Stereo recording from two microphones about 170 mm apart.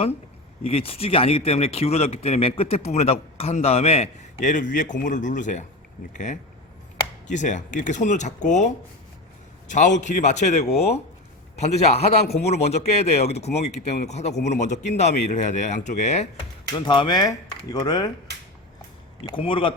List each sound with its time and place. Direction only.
0.6 s a man's voice: 35° left (ahead or behind)
9.6 s a man's voice: 45° left (ahead or behind)
16.7 s speech: 30° left (ahead or behind)
18.3 s finger snapping: 80° right
19.3 s a man's voice: 30° left (ahead or behind)